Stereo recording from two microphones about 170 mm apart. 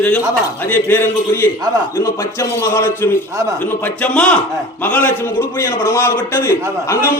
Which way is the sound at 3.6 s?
10° left (ahead or behind).